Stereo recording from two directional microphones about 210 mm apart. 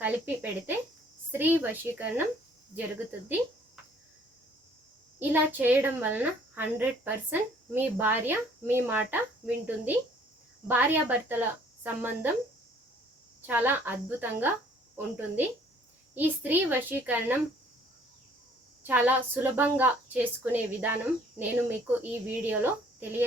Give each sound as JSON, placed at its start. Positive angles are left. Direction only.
{"t": 0.0, "sound": "cricket", "side_deg": -10}
{"t": 1.3, "sound": "a woman's voice", "side_deg": -10}
{"t": 5.3, "sound": "a woman's voice", "side_deg": -10}
{"t": 13.5, "sound": "a woman's voice", "side_deg": -10}
{"t": 16.1, "sound": "a woman's voice", "side_deg": -10}
{"t": 18.8, "sound": "a woman's voice", "side_deg": -10}